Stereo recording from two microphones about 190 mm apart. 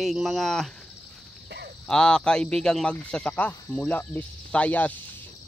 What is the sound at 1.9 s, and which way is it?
Speech, 5° left (ahead or behind).